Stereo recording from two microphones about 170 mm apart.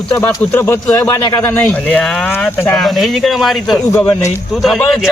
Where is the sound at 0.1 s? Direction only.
15° left (ahead or behind); by 3.8 s centre (ahead or behind).